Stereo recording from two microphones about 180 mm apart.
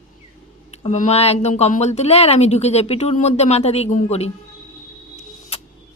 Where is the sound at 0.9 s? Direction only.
40° left (ahead or behind).